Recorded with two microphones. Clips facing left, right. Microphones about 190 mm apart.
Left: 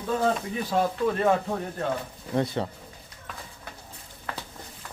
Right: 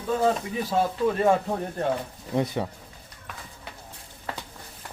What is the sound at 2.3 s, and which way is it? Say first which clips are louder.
Speech: even; 10° right (ahead or behind).